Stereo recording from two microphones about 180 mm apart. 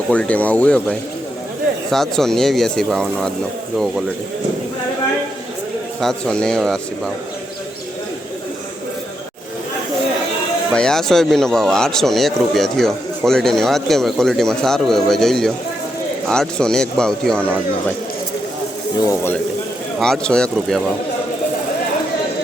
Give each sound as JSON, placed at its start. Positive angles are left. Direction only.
{"t": 0.1, "sound": "speech", "side_deg": 5}
{"t": 6.0, "sound": "speech", "side_deg": 0}
{"t": 10.7, "sound": "speech", "side_deg": 5}
{"t": 18.9, "sound": "speech", "side_deg": 15}
{"t": 20.0, "sound": "speech", "side_deg": 5}